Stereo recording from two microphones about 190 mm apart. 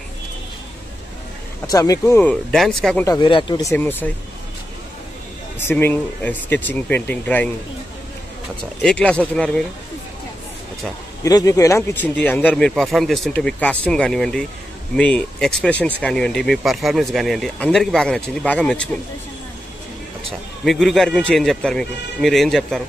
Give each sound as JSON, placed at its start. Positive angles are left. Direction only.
{"t": 1.7, "sound": "speech", "side_deg": 20}
{"t": 2.5, "sound": "speech", "side_deg": 0}
{"t": 3.0, "sound": "speech", "side_deg": 20}
{"t": 3.7, "sound": "speech", "side_deg": 10}
{"t": 5.6, "sound": "speech", "side_deg": 10}
{"t": 8.8, "sound": "speech", "side_deg": 5}
{"t": 11.2, "sound": "speech", "side_deg": 20}
{"t": 20.6, "sound": "speech", "side_deg": 0}